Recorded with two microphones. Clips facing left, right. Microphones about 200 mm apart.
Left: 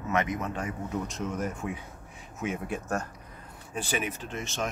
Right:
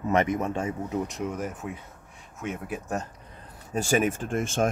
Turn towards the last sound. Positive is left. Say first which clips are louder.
# right 8 dB
turn(degrees=-50)  # may be behind; listen again after turning